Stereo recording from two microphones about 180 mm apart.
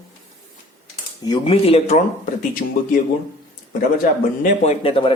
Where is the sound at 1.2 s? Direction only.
25° left (ahead or behind).